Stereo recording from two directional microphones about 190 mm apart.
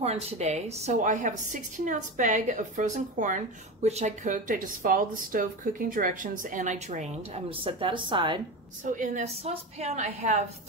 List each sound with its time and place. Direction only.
0.0 s a woman's voice: 35° right (ahead or behind)
8.8 s a woman's voice: 45° right (ahead or behind)